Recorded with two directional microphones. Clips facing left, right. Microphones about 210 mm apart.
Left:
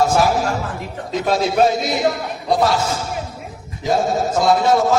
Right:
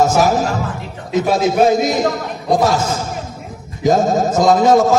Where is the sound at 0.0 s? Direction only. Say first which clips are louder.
Right 2 dB; 45° right (ahead or behind).